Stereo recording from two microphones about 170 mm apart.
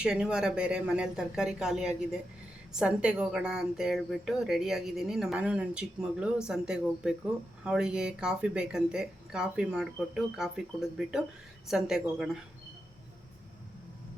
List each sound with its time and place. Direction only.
0.0 s a woman's voice: 5° right (ahead or behind)